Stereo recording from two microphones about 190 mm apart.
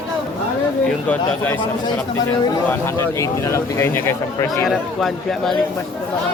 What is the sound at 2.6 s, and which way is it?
Speech, 15° left (ahead or behind).